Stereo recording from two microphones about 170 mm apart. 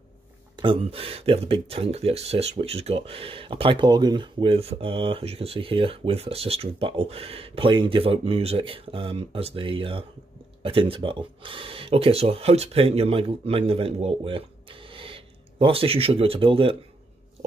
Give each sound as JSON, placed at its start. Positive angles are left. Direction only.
{"t": 0.6, "sound": "speech", "side_deg": -30}